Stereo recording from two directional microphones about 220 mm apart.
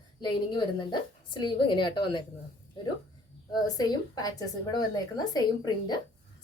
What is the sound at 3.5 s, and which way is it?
A woman's voice, 15° left (ahead or behind).